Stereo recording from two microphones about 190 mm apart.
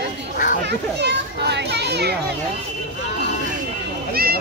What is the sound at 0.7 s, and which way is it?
A child's voice, 60° right (ahead or behind).